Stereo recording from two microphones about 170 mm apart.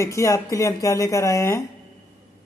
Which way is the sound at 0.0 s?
15° left (ahead or behind).